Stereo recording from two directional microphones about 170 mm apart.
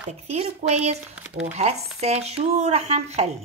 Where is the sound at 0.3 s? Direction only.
40° right (ahead or behind).